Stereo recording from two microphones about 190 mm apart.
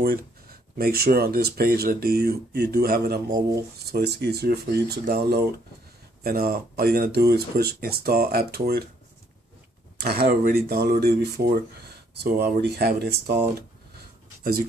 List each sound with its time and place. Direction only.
0.0 s speech: 50° right (ahead or behind)
3.3 s speech: 20° right (ahead or behind)
3.7 s speech: 55° right (ahead or behind)
9.9 s speech: 60° right (ahead or behind)